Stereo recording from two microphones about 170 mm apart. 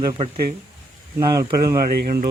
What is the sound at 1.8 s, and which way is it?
Speech, 60° right (ahead or behind).